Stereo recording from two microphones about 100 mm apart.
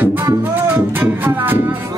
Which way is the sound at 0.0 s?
20° right (ahead or behind).